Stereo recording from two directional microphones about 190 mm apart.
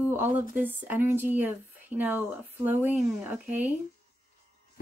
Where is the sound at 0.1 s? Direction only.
10° right (ahead or behind).